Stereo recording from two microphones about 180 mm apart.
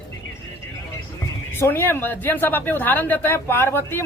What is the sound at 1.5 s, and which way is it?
Speech, 10° left (ahead or behind).